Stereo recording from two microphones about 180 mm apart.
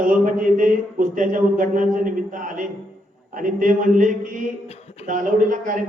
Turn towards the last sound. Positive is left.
turn(degrees=-45)  # may be behind; listen again after turning